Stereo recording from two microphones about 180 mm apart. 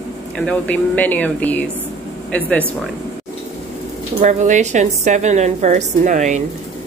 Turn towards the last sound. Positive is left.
turn(degrees=-45)  # may be behind; listen again after turning